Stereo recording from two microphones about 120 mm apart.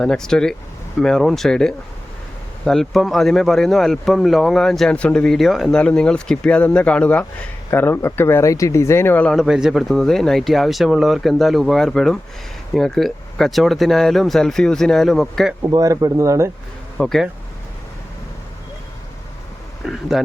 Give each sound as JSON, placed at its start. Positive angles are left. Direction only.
{"t": 0.0, "sound": "speech", "side_deg": 5}
{"t": 9.3, "sound": "speech", "side_deg": -5}
{"t": 15.7, "sound": "speech", "side_deg": -30}
{"t": 17.0, "sound": "speech", "side_deg": 0}
{"t": 19.8, "sound": "speech", "side_deg": 0}